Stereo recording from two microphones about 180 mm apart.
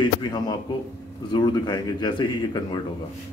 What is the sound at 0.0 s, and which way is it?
A man's voice, 25° left (ahead or behind).